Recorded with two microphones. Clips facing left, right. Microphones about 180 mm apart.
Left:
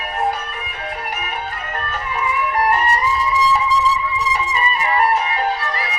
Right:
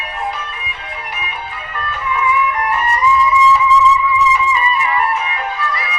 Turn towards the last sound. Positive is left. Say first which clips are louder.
# left 1 dB
turn(degrees=35)  # may be behind; listen again after turning